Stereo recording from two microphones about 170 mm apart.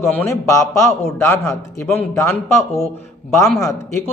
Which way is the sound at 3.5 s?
15° left (ahead or behind).